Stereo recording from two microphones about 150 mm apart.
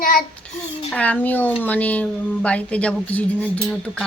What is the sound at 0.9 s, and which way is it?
Speech, 10° left (ahead or behind).